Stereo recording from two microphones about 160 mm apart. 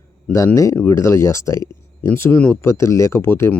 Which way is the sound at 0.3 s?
20° left (ahead or behind).